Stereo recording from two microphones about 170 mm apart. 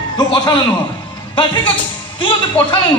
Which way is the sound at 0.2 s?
25° left (ahead or behind).